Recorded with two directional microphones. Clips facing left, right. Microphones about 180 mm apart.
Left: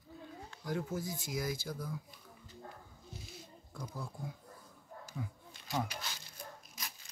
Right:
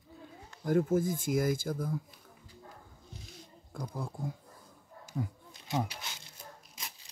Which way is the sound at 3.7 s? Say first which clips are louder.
Right 5 dB; 50° right (ahead or behind).